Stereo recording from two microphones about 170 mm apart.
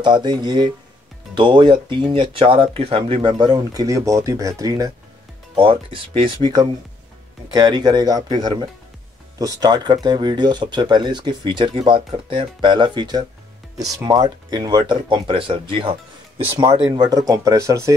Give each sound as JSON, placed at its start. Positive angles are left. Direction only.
{"t": 0.0, "sound": "speech", "side_deg": -25}
{"t": 5.6, "sound": "speech", "side_deg": -30}